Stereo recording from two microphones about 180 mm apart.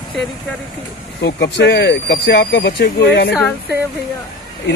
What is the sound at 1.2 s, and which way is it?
Speech, 65° left (ahead or behind).